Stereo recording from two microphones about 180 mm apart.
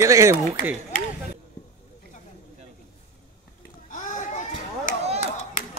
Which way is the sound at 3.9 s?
45° left (ahead or behind).